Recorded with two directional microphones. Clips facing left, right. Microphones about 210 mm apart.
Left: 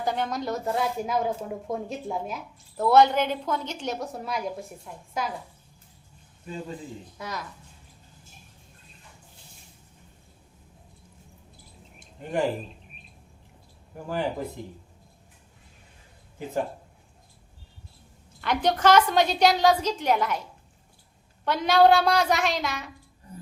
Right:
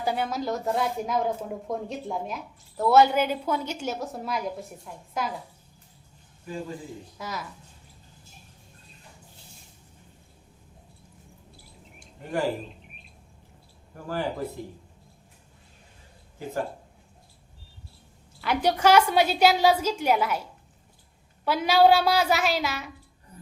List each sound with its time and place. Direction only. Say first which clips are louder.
0.0 s a woman's voice: even; 10° right (ahead or behind)
7.2 s a woman's voice: even; 5° right (ahead or behind)
11.9 s a sound: left 2 dB; 20° left (ahead or behind)
13.9 s speech: left 1 dB; 15° left (ahead or behind)
18.3 s a woman's voice: even; 10° right (ahead or behind)
21.4 s a woman's voice: even; 5° right (ahead or behind)